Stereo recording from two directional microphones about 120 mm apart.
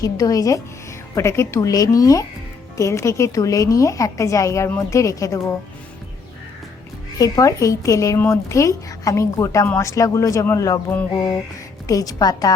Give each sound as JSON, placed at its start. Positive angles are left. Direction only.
{"t": 0.0, "sound": "a woman's voice", "side_deg": 30}
{"t": 7.2, "sound": "a woman's voice", "side_deg": 30}
{"t": 11.1, "sound": "a woman's voice", "side_deg": 40}